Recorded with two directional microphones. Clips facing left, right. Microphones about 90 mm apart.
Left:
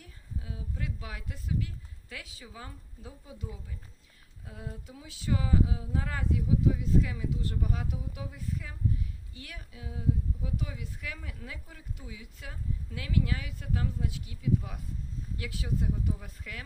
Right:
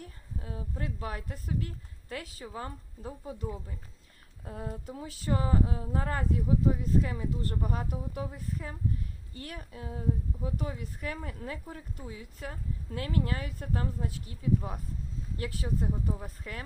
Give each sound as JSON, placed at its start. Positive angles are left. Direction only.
{"t": 0.0, "sound": "a woman's voice", "side_deg": -45}